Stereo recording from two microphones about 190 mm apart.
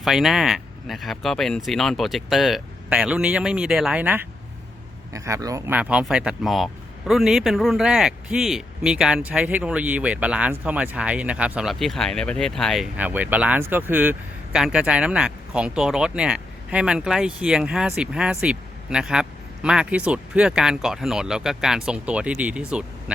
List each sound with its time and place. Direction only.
0.0 s speech: centre (ahead or behind)